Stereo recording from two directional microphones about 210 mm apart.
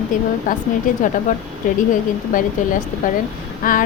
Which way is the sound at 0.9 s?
40° left (ahead or behind).